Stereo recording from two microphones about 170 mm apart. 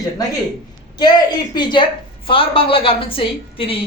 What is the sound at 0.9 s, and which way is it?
A woman's voice, 25° left (ahead or behind).